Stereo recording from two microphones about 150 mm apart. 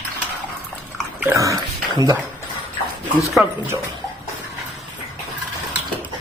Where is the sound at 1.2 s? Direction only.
20° right (ahead or behind).